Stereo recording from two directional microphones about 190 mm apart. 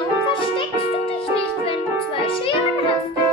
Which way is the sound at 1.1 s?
30° left (ahead or behind).